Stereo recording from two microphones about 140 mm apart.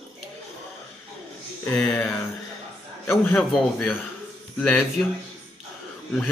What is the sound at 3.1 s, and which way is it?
Speech, 15° left (ahead or behind).